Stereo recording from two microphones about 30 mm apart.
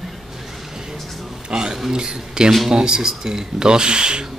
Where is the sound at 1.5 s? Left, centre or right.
Right.